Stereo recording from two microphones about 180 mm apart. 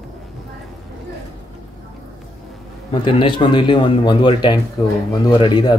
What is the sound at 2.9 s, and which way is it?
Speech, 30° left (ahead or behind).